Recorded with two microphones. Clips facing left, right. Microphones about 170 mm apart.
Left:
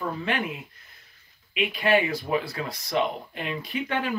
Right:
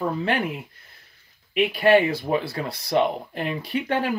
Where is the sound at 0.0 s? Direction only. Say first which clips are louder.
Right 5 dB; 35° right (ahead or behind).